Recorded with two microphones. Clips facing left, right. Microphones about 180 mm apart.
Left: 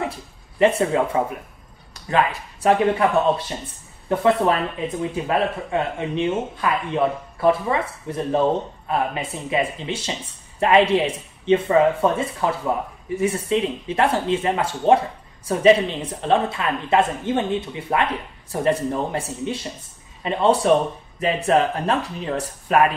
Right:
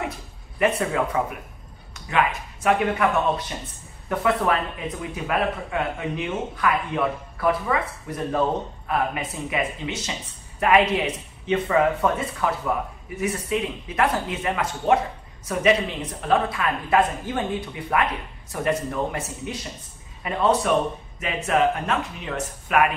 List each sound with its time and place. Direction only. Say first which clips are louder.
0.6 s speech: left 4 dB; 25° left (ahead or behind)